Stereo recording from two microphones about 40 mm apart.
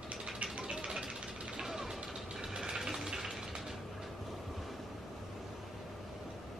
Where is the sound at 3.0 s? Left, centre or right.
Centre.